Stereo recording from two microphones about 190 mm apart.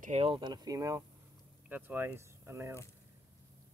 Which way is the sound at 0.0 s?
35° right (ahead or behind).